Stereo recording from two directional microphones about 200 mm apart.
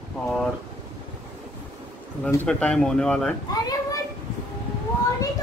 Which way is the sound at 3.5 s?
20° left (ahead or behind).